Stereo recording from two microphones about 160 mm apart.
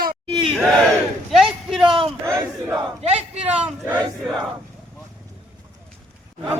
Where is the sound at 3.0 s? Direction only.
40° right (ahead or behind).